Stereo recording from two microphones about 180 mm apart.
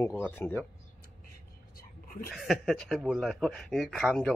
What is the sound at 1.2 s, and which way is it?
Whispering, 55° left (ahead or behind).